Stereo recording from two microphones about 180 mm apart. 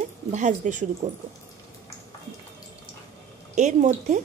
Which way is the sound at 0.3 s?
40° right (ahead or behind).